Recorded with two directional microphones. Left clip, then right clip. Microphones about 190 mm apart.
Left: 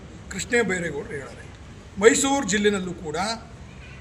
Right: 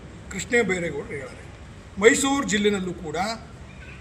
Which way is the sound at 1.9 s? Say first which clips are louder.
Even; 5° left (ahead or behind).